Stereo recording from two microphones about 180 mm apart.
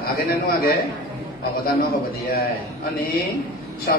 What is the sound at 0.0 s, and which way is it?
Speech, 55° left (ahead or behind).